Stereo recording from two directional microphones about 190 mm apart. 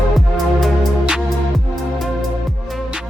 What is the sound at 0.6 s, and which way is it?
Music, 5° right (ahead or behind).